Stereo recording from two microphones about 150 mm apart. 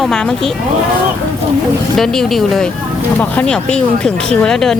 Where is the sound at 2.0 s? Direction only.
Centre (ahead or behind).